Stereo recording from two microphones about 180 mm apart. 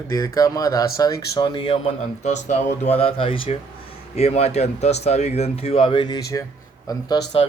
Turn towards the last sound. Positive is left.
turn(degrees=20)  # may be behind; listen again after turning